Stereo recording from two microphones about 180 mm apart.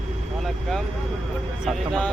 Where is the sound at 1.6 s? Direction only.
5° left (ahead or behind).